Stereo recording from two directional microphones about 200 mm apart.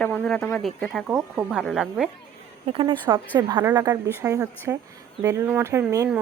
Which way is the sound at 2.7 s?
25° right (ahead or behind).